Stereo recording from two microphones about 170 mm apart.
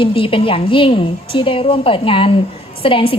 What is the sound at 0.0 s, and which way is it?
A woman's voice, 30° left (ahead or behind).